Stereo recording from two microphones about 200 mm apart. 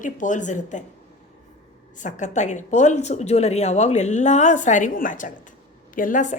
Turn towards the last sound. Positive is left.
turn(degrees=40)  # may be behind; listen again after turning